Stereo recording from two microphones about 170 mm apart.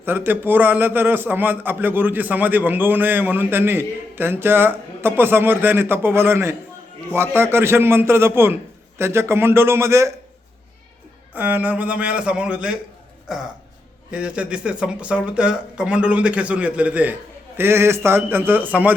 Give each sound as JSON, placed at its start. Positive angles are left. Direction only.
{"t": 0.0, "sound": "a man's voice", "side_deg": -10}
{"t": 11.3, "sound": "a man's voice", "side_deg": -10}
{"t": 14.1, "sound": "a man's voice", "side_deg": -5}